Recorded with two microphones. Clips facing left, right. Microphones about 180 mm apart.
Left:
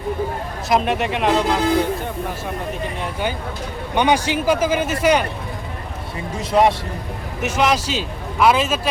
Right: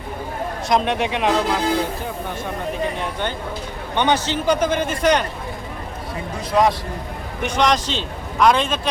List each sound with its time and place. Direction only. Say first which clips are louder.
0.7 s a man's voice: left 1 dB; centre (ahead or behind)
2.8 s a man's voice: even; 5° left (ahead or behind)
6.3 s a man's voice: left 2 dB; 25° left (ahead or behind)
7.4 s a man's voice: even; 5° left (ahead or behind)